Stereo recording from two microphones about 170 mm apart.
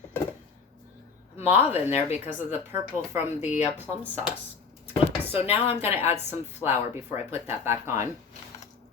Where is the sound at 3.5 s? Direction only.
40° left (ahead or behind).